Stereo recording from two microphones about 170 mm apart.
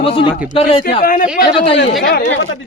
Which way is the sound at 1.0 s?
55° left (ahead or behind).